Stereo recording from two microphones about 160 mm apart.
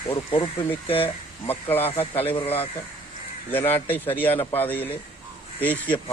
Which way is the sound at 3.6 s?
10° left (ahead or behind).